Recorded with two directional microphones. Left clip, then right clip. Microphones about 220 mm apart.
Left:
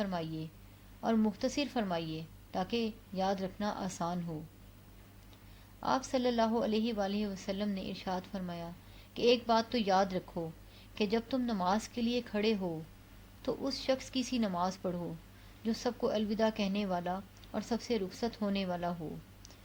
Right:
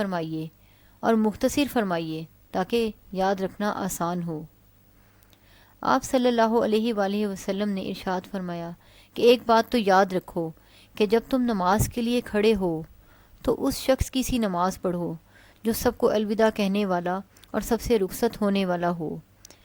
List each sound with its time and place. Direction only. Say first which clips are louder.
0.0 s a woman's voice: right 9 dB; 45° right (ahead or behind)
5.8 s a woman's voice: right 10 dB; 45° right (ahead or behind)